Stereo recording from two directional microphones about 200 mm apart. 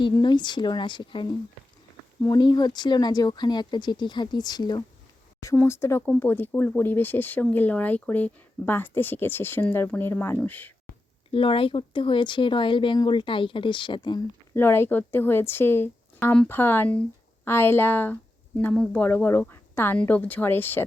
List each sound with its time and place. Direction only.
0.0 s speech: 20° left (ahead or behind)
11.3 s speech: 25° left (ahead or behind)
14.5 s speech: 10° left (ahead or behind)